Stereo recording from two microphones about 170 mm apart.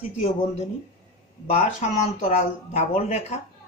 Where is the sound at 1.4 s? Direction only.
40° left (ahead or behind).